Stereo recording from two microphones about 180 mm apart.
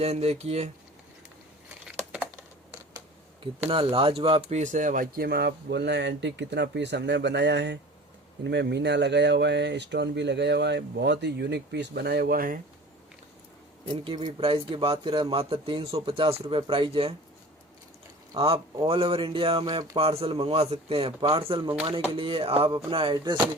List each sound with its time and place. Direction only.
0.0 s speech: 35° right (ahead or behind)
3.7 s speech: 30° right (ahead or behind); by 12.5 s 55° right (ahead or behind)
14.0 s speech: 30° right (ahead or behind)
18.3 s speech: 30° right (ahead or behind)